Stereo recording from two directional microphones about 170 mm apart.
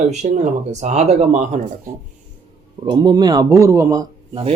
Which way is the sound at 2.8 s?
25° right (ahead or behind).